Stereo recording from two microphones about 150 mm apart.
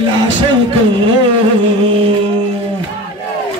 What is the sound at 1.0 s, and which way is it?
Music, 35° right (ahead or behind).